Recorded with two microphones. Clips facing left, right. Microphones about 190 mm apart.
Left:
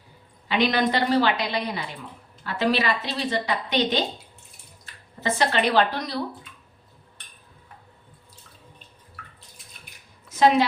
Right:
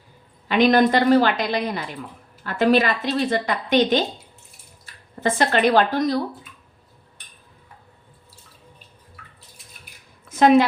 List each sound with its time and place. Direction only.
0.4 s a woman's voice: 50° right (ahead or behind)
5.2 s a woman's voice: 50° right (ahead or behind)
10.2 s a woman's voice: 50° right (ahead or behind)